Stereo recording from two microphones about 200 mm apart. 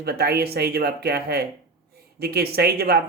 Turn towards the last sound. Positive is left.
turn(degrees=-50)  # may be behind; listen again after turning